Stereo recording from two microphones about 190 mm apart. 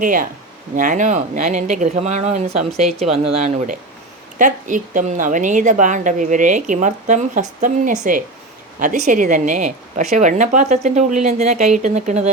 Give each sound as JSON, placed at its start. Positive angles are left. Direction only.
{"t": 0.0, "sound": "a woman's voice", "side_deg": -45}